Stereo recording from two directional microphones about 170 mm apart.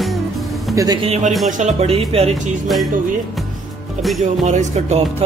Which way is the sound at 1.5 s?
45° right (ahead or behind).